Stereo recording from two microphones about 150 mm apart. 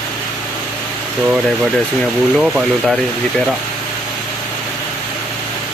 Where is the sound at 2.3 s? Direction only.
5° right (ahead or behind).